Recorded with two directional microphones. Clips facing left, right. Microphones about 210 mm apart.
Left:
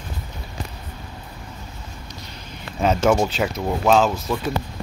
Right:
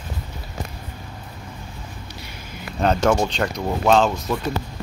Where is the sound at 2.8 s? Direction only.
5° left (ahead or behind).